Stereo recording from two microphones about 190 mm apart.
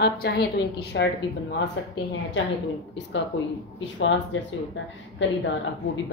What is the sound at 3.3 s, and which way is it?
Speech, 70° left (ahead or behind).